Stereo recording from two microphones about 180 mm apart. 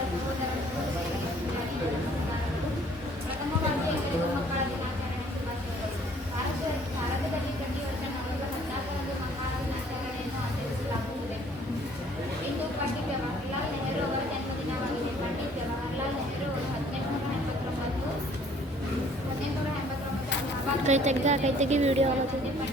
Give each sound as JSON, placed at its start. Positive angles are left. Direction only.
{"t": 20.8, "sound": "a woman's voice", "side_deg": -40}